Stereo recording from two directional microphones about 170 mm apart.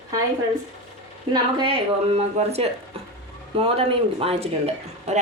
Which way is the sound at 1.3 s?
25° right (ahead or behind).